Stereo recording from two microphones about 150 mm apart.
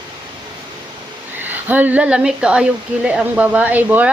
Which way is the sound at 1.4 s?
10° right (ahead or behind).